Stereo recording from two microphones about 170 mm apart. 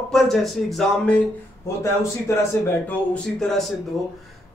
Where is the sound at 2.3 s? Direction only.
15° left (ahead or behind).